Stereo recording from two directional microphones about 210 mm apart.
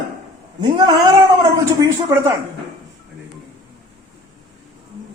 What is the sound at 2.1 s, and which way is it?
Speech, 15° right (ahead or behind).